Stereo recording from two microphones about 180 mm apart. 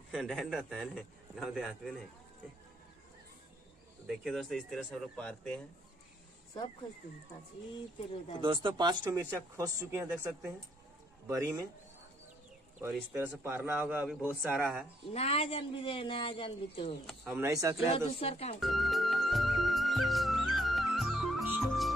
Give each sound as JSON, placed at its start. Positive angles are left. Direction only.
{"t": 0.1, "sound": "a man's voice", "side_deg": 0}
{"t": 4.2, "sound": "a man's voice", "side_deg": 0}
{"t": 8.4, "sound": "a man's voice", "side_deg": -25}
{"t": 12.8, "sound": "a man's voice", "side_deg": -15}
{"t": 15.1, "sound": "speech", "side_deg": 35}
{"t": 17.2, "sound": "a man's voice", "side_deg": -10}
{"t": 17.8, "sound": "speech", "side_deg": 30}
{"t": 18.6, "sound": "music", "side_deg": 0}